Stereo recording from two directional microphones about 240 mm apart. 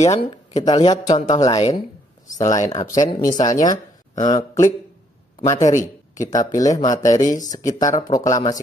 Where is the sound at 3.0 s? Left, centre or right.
Left.